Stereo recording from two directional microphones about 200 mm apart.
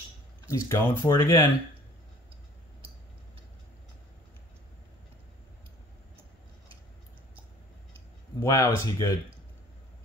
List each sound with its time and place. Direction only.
0.5 s speech: 15° left (ahead or behind)
8.4 s speech: 15° left (ahead or behind)